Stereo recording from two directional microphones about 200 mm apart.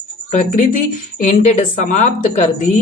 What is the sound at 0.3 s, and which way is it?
Speech, 40° left (ahead or behind).